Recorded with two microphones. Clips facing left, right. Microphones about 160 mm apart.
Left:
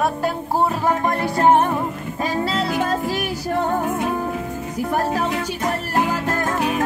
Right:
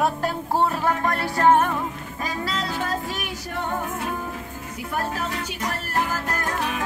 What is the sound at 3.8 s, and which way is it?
Music, 20° left (ahead or behind).